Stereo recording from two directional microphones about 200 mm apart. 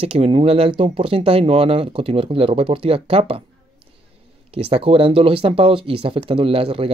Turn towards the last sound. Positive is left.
turn(degrees=-30)  # may be behind; listen again after turning